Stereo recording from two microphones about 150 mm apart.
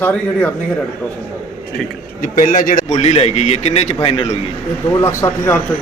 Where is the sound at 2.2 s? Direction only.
65° left (ahead or behind); by 4.4 s 45° left (ahead or behind).